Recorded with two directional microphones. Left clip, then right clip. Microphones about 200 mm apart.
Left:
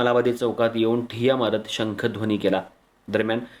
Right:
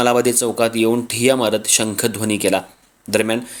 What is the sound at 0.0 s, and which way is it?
Speech, 40° right (ahead or behind).